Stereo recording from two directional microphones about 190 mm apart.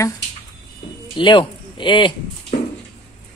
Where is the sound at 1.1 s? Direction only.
25° left (ahead or behind).